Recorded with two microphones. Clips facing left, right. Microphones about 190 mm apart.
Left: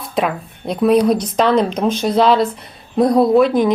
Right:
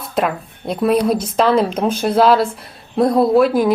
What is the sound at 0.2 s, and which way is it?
Speech, centre (ahead or behind).